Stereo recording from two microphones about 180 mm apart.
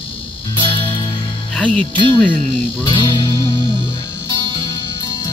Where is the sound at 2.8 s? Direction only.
25° left (ahead or behind).